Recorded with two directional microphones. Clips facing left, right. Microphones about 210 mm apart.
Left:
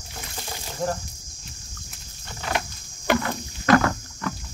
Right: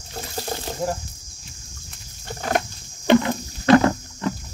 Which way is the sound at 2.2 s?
45° right (ahead or behind).